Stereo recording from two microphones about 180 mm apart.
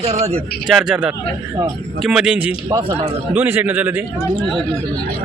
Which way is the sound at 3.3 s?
10° right (ahead or behind).